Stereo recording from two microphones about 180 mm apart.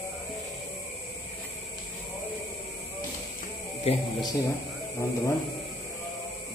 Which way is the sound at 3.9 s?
35° left (ahead or behind).